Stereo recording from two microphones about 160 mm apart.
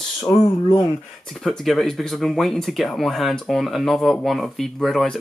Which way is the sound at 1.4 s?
Centre (ahead or behind).